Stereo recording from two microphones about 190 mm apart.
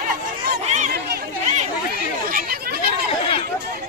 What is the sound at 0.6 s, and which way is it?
Chatter, 35° right (ahead or behind).